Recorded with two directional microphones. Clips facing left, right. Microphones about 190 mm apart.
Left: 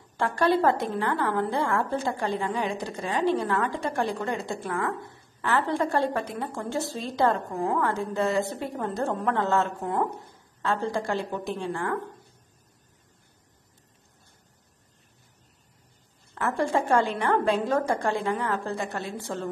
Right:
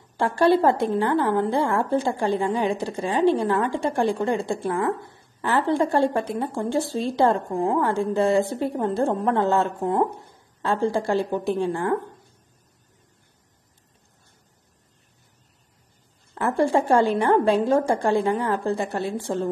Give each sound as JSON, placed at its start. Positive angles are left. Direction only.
{"t": 0.2, "sound": "a woman's voice", "side_deg": -30}
{"t": 16.3, "sound": "a woman's voice", "side_deg": -35}